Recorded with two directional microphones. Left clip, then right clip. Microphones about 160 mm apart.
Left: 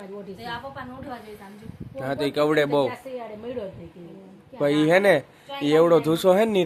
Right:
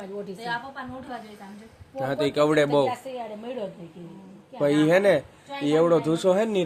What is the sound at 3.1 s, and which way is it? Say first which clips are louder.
Speech: even; 45° right (ahead or behind).